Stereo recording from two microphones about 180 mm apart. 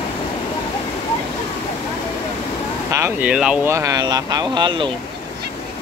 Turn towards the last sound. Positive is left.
turn(degrees=-25)  # may be behind; listen again after turning